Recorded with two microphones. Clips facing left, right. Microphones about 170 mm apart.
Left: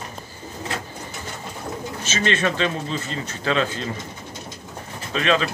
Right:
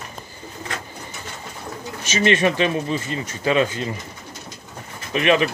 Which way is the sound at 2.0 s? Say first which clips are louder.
Right 5 dB; 15° right (ahead or behind).